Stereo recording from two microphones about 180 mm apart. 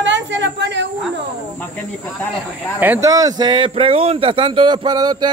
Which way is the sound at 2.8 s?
15° right (ahead or behind).